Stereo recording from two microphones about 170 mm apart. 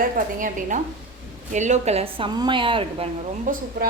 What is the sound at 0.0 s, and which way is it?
A woman's voice, 50° right (ahead or behind).